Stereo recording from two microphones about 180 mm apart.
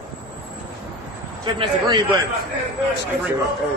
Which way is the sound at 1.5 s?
30° right (ahead or behind).